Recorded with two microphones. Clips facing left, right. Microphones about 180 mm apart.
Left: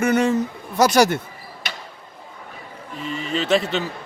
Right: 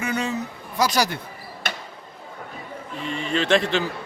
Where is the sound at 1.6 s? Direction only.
50° right (ahead or behind).